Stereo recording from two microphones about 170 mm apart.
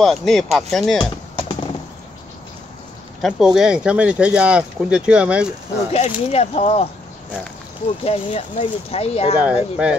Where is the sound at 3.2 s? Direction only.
5° right (ahead or behind).